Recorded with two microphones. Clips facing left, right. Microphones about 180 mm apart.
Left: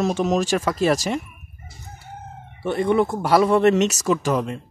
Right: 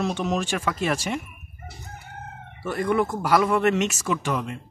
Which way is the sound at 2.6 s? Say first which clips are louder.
Left 4 dB; 25° left (ahead or behind).